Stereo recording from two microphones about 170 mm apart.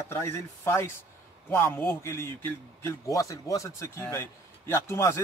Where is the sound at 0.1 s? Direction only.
15° left (ahead or behind).